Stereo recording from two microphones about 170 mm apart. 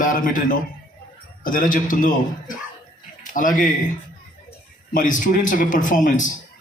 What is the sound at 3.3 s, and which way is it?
A man's voice, 50° left (ahead or behind).